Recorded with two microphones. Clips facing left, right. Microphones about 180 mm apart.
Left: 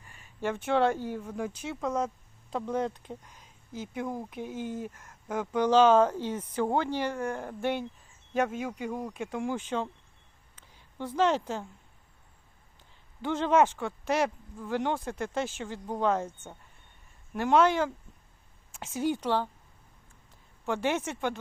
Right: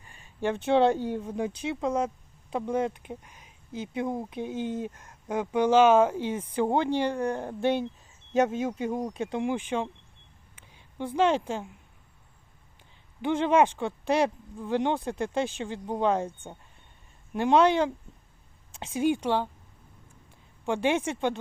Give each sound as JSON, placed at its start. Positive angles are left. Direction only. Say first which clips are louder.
{"t": 0.0, "sound": "speech", "louder": "right 3 dB", "side_deg": -25}
{"t": 10.7, "sound": "a sound", "louder": "right 3 dB", "side_deg": -15}
{"t": 11.3, "sound": "speech", "louder": "right 2 dB", "side_deg": -15}
{"t": 13.2, "sound": "speech", "louder": "right 2 dB", "side_deg": -15}
{"t": 20.7, "sound": "speech", "louder": "right 3 dB", "side_deg": -15}